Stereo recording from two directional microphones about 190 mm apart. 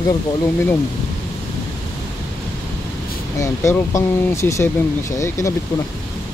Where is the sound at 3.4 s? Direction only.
15° left (ahead or behind).